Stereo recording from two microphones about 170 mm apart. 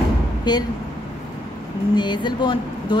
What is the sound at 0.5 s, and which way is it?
Speech, 25° left (ahead or behind).